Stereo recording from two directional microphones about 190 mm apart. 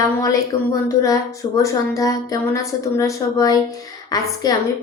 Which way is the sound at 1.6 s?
15° left (ahead or behind).